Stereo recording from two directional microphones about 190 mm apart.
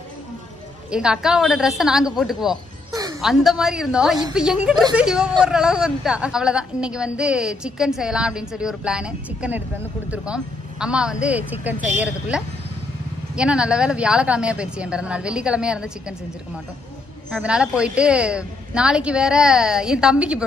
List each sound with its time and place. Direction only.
0.8 s a woman's voice: 5° right (ahead or behind)
2.9 s a sound: 20° right (ahead or behind)
3.2 s a woman's voice: centre (ahead or behind)
17.4 s a woman's voice: 5° right (ahead or behind)